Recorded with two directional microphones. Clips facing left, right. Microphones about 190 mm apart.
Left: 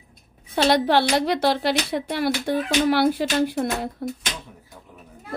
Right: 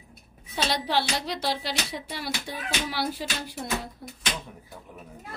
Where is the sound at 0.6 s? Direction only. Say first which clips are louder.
Left 9 dB; 55° left (ahead or behind).